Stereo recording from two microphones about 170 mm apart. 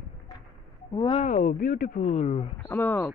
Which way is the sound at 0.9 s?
30° left (ahead or behind).